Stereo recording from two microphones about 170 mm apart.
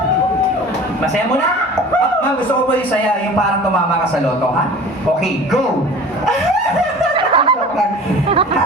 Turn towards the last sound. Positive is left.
turn(degrees=-30)  # may be behind; listen again after turning